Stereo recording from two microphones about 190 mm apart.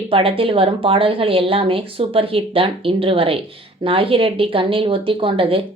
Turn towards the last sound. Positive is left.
turn(degrees=-30)  # may be behind; listen again after turning